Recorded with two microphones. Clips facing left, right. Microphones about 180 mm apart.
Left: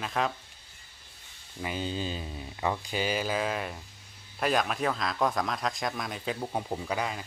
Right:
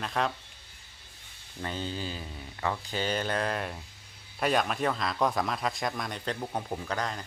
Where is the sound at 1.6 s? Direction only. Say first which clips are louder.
Left 2 dB; 15° left (ahead or behind).